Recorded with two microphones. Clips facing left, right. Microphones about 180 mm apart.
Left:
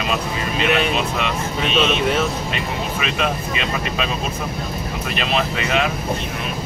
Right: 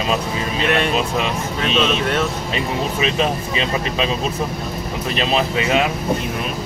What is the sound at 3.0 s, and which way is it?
Speech, 30° right (ahead or behind).